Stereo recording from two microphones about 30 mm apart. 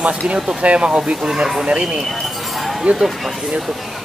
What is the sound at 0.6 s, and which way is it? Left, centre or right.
Speech, right.